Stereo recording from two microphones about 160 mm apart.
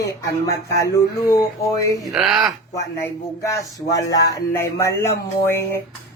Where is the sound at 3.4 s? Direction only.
20° left (ahead or behind).